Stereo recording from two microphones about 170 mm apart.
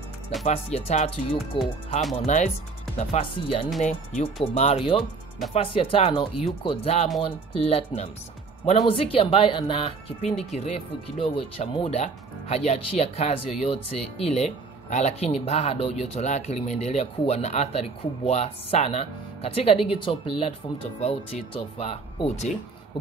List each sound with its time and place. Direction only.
0.5 s speech: 40° left (ahead or behind)